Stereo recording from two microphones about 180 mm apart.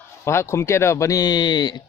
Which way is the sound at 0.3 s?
15° left (ahead or behind).